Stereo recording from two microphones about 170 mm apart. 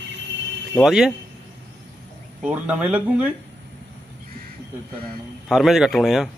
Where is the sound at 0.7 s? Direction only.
5° right (ahead or behind).